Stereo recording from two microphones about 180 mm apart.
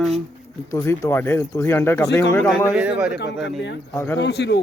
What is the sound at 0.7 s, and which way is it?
Speech, 15° left (ahead or behind).